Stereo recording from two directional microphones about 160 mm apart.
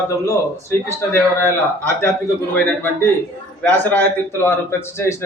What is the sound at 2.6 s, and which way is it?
A man's voice, 10° left (ahead or behind).